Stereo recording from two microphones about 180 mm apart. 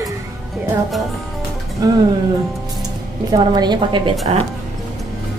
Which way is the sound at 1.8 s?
20° right (ahead or behind).